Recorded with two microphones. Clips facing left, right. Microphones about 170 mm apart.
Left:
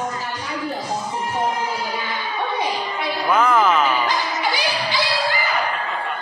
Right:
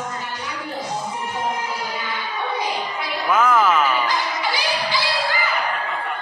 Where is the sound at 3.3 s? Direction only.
5° right (ahead or behind).